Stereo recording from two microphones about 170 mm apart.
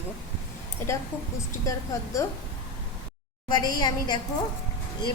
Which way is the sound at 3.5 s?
25° left (ahead or behind).